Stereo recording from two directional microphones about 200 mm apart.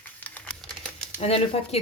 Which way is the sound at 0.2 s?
5° left (ahead or behind).